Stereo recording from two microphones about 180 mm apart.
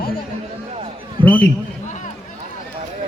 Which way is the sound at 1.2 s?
10° left (ahead or behind).